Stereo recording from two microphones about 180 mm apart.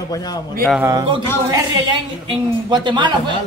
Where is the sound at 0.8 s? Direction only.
20° right (ahead or behind).